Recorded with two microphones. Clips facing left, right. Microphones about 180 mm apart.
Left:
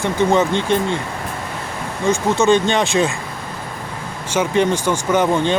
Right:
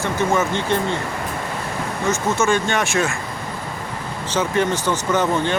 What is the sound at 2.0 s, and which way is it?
Speech, 20° left (ahead or behind).